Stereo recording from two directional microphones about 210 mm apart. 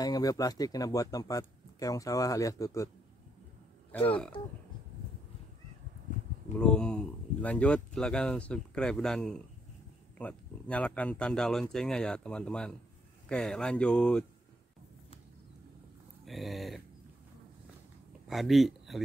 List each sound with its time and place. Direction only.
0.0 s speech: 15° left (ahead or behind)
3.9 s speech: 5° left (ahead or behind)
6.6 s speech: 5° left (ahead or behind)
16.3 s speech: centre (ahead or behind)
18.3 s speech: centre (ahead or behind)